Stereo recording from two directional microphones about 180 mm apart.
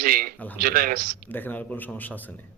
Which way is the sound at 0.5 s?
55° right (ahead or behind).